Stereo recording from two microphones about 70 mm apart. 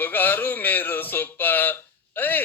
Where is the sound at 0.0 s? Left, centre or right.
Left.